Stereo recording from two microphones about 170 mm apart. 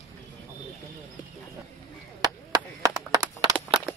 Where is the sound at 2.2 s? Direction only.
25° right (ahead or behind).